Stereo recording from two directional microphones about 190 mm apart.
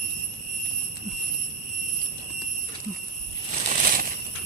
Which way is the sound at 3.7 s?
45° right (ahead or behind).